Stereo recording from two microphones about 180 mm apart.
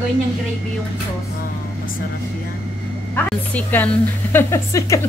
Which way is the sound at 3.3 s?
10° left (ahead or behind).